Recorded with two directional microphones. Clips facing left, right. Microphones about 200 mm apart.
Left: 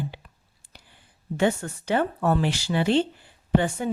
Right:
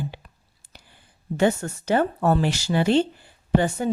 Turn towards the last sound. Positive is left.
turn(degrees=-40)  # may be behind; listen again after turning